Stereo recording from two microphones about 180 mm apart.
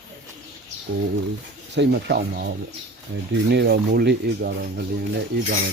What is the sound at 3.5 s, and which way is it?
Speech, 65° right (ahead or behind).